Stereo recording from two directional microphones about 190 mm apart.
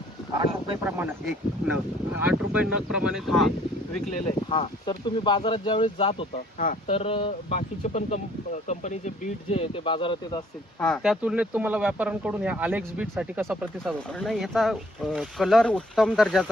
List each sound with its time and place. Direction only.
0.9 s speech: 10° right (ahead or behind)
4.4 s speech: 30° left (ahead or behind)
10.8 s speech: 5° left (ahead or behind)